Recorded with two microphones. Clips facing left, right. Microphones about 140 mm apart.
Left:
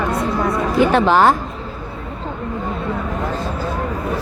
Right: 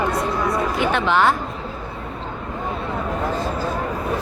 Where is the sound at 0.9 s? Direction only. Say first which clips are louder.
Left 4 dB; 40° left (ahead or behind).